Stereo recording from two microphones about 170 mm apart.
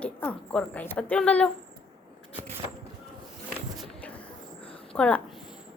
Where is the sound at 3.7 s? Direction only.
5° left (ahead or behind).